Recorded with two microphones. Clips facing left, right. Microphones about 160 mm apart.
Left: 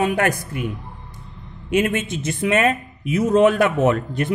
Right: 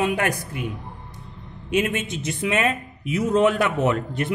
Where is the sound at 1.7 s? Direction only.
50° left (ahead or behind).